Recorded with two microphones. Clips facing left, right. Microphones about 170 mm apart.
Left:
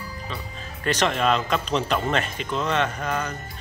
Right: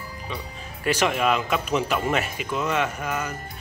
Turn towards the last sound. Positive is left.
turn(degrees=-10)  # may be behind; listen again after turning